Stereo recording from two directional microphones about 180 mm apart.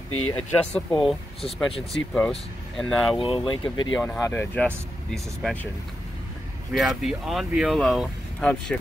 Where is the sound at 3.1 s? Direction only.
30° left (ahead or behind).